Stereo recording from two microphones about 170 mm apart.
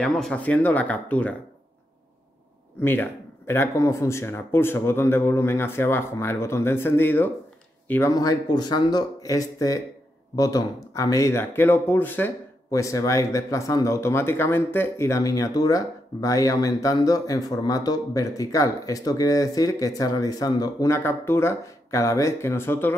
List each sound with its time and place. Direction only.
0.0 s speech: 5° left (ahead or behind)
2.8 s speech: 15° left (ahead or behind)